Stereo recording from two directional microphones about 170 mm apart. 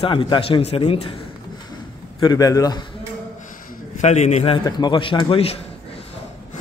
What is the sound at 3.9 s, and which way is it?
Speech, 40° left (ahead or behind).